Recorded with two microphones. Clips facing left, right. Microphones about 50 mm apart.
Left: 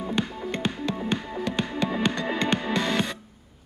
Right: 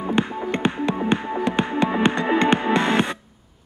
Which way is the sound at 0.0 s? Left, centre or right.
Right.